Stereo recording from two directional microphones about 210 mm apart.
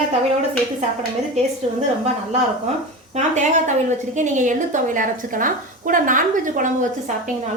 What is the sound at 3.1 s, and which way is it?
A woman's voice, 35° right (ahead or behind).